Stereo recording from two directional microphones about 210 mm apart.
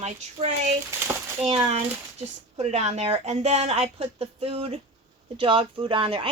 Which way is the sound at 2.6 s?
30° right (ahead or behind).